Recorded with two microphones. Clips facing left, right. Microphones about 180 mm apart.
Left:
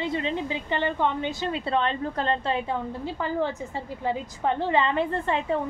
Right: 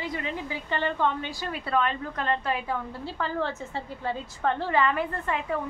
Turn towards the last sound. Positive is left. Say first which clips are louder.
# left 4 dB
turn(degrees=25)  # may be behind; listen again after turning